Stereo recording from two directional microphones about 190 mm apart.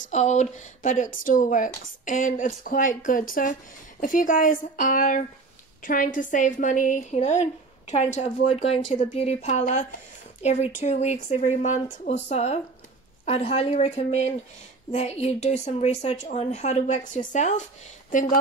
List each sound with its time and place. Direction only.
0.0 s a woman's voice: 40° left (ahead or behind)